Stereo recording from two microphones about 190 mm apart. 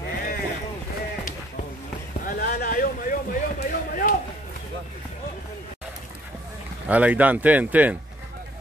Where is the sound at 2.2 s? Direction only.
45° left (ahead or behind).